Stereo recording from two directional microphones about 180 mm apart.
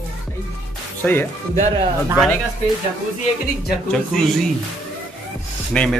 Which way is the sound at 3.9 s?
5° left (ahead or behind).